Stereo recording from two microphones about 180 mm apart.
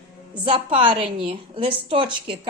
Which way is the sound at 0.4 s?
30° right (ahead or behind).